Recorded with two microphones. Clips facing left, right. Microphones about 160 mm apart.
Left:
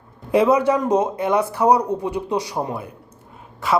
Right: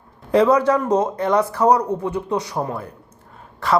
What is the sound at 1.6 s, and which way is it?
Speech, 10° left (ahead or behind).